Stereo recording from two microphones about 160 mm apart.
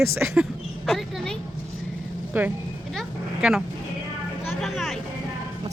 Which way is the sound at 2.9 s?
Centre (ahead or behind).